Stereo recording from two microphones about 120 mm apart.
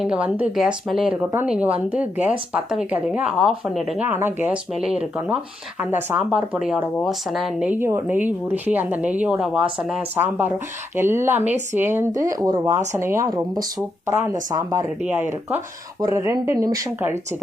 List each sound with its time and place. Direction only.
0.0 s a woman's voice: 5° right (ahead or behind)
3.3 s speech: centre (ahead or behind)
4.0 s a woman's voice: 15° right (ahead or behind); by 7.5 s centre (ahead or behind)
7.6 s a woman's voice: 15° right (ahead or behind)
16.0 s speech: 25° right (ahead or behind)